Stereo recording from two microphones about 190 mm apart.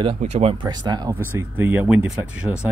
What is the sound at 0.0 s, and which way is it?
Speech, 35° right (ahead or behind).